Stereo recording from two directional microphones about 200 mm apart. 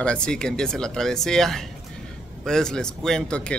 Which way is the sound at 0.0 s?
5° left (ahead or behind).